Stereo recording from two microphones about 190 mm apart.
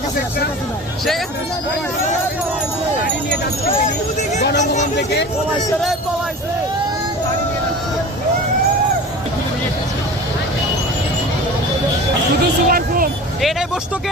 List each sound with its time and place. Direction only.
4.2 s vehicle: 40° left (ahead or behind)
4.6 s a sound: 40° left (ahead or behind)
12.6 s vehicle: 50° right (ahead or behind)